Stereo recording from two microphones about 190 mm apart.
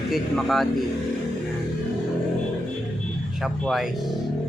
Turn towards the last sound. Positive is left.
turn(degrees=0)  # may be behind; listen again after turning